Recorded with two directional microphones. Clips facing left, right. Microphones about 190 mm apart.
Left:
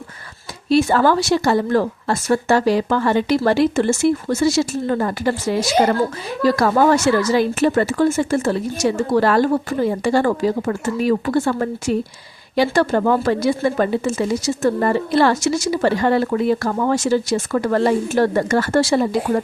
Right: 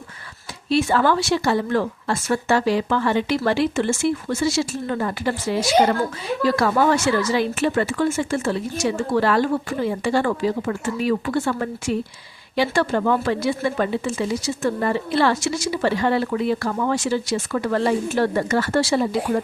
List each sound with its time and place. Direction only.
0.7 s a woman's voice: 40° left (ahead or behind)